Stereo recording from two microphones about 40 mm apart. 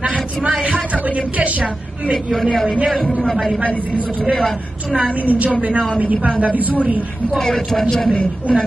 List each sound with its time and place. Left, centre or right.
0.7 s a woman's voice: right
2.3 s a man's voice: centre
4.9 s a woman's voice: right
7.3 s speech: centre
8.1 s a woman's voice: left